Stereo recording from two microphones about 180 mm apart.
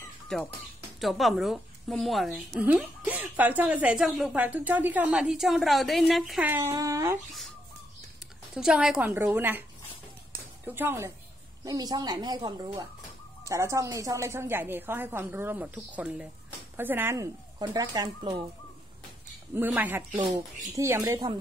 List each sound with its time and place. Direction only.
0.3 s speech: 5° left (ahead or behind)
6.5 s speech: 15° right (ahead or behind)
8.5 s speech: 5° right (ahead or behind)
10.7 s speech: 10° right (ahead or behind)
19.5 s speech: 10° right (ahead or behind)